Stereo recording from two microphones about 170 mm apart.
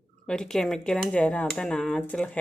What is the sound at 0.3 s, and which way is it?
Speech, 5° left (ahead or behind).